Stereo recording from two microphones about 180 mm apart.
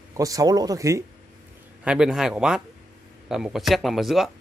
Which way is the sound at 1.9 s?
5° right (ahead or behind).